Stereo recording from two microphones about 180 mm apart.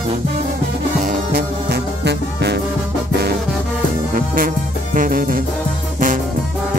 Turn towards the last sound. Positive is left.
turn(degrees=-50)  # may be behind; listen again after turning